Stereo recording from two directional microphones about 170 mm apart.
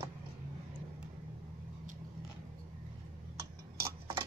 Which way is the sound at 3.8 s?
20° right (ahead or behind).